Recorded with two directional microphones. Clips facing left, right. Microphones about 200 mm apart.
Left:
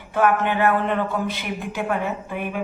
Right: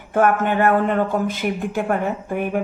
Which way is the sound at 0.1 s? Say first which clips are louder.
Right 2 dB; 50° right (ahead or behind).